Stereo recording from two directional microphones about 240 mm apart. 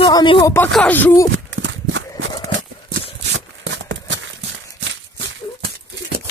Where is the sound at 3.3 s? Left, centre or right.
Right.